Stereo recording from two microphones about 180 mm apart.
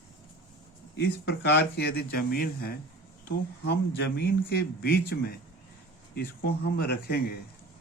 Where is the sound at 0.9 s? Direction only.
65° left (ahead or behind).